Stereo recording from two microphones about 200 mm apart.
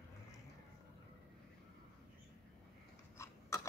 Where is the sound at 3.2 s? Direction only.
15° left (ahead or behind).